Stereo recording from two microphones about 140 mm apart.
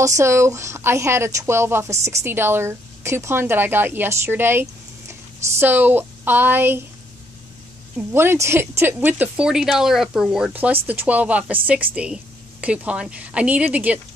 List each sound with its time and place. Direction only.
0.0 s speech: 20° right (ahead or behind)
8.1 s speech: 15° right (ahead or behind)